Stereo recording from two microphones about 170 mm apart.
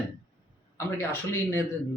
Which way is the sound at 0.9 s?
15° left (ahead or behind).